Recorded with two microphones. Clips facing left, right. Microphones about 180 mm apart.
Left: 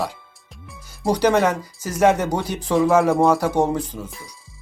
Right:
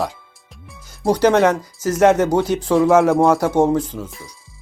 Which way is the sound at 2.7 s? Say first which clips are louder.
Right 2 dB; centre (ahead or behind).